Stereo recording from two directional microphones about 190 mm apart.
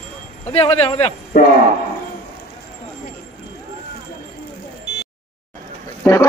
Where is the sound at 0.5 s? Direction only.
30° left (ahead or behind).